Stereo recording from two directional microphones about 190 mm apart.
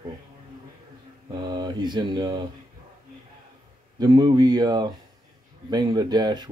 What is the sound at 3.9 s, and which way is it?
Speech, 20° right (ahead or behind).